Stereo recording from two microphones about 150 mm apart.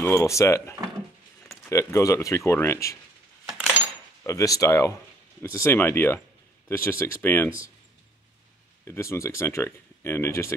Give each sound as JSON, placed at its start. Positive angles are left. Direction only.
{"t": 0.0, "sound": "speech", "side_deg": 20}
{"t": 4.2, "sound": "speech", "side_deg": 20}
{"t": 8.8, "sound": "speech", "side_deg": 20}